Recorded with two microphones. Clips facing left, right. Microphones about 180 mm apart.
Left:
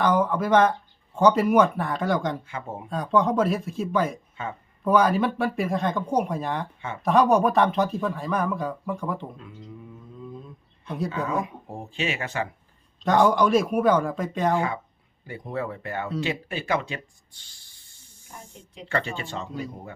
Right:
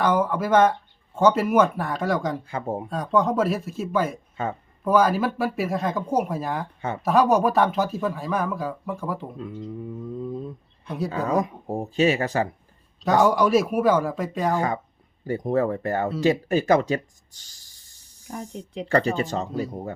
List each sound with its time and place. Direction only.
0.0 s speech: centre (ahead or behind)
2.5 s speech: 40° right (ahead or behind)
2.9 s speech: centre (ahead or behind)
4.4 s speech: 40° right (ahead or behind)
4.8 s speech: centre (ahead or behind)
10.8 s speech: centre (ahead or behind)
11.3 s speech: 40° right (ahead or behind)
13.0 s speech: centre (ahead or behind)
15.3 s speech: 40° right (ahead or behind)